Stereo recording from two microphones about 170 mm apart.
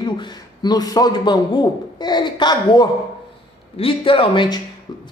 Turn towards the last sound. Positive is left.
turn(degrees=30)  # may be behind; listen again after turning